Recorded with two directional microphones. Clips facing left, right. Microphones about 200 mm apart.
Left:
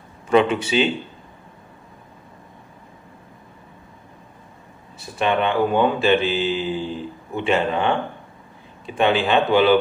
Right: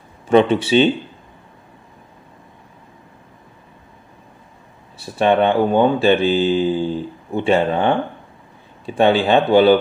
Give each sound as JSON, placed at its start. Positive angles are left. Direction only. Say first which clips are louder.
{"t": 0.3, "sound": "speech", "louder": "right 4 dB", "side_deg": -30}
{"t": 4.9, "sound": "speech", "louder": "right 5 dB", "side_deg": -35}